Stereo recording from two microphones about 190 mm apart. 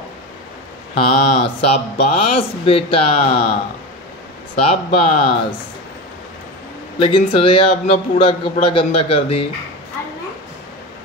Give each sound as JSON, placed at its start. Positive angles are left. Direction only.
{"t": 0.9, "sound": "a man's voice", "side_deg": 30}
{"t": 4.6, "sound": "a man's voice", "side_deg": 30}
{"t": 7.0, "sound": "a man's voice", "side_deg": 25}